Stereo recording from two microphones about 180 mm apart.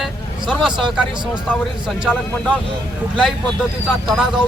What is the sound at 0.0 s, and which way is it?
Vehicle, centre (ahead or behind).